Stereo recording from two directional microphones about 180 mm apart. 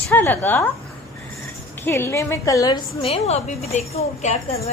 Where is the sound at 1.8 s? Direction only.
10° left (ahead or behind).